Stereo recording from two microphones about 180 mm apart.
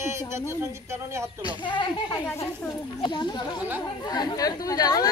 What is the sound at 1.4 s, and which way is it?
Speech, 25° left (ahead or behind).